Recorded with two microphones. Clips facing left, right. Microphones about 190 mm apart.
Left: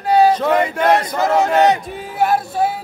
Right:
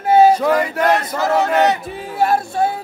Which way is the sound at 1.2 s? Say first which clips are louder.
Even; 20° left (ahead or behind).